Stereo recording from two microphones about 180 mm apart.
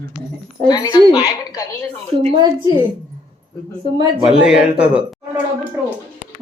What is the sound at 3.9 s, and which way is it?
Speech, 35° right (ahead or behind).